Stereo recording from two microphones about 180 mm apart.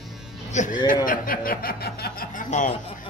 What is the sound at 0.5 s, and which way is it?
Speech, 40° left (ahead or behind).